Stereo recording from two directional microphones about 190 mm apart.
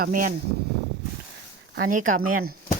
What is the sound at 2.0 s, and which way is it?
Speech, 45° right (ahead or behind).